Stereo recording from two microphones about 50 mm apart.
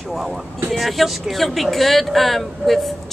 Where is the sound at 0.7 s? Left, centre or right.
Centre.